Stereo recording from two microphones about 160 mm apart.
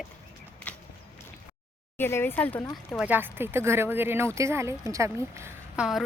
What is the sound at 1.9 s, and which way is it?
Speech, 15° left (ahead or behind).